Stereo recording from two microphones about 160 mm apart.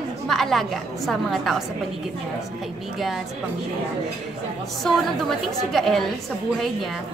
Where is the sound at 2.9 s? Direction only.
Centre (ahead or behind).